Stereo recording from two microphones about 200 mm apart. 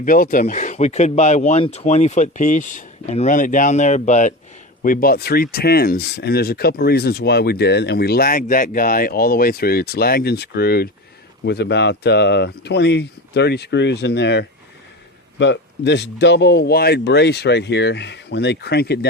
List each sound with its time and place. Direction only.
0.0 s speech: 45° left (ahead or behind)